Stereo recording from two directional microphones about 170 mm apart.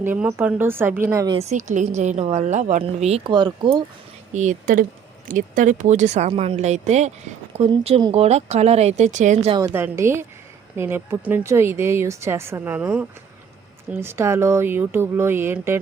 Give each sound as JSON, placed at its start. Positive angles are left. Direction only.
{"t": 0.0, "sound": "a woman's voice", "side_deg": -15}
{"t": 1.3, "sound": "a woman's voice", "side_deg": -40}
{"t": 4.3, "sound": "a woman's voice", "side_deg": -45}
{"t": 9.6, "sound": "a woman's voice", "side_deg": -15}